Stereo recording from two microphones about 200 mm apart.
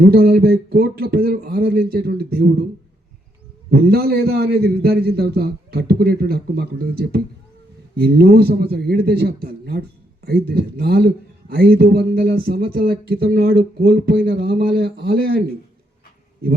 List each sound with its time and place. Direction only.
0.0 s a man's voice: 50° right (ahead or behind)
3.7 s a man's voice: 50° right (ahead or behind)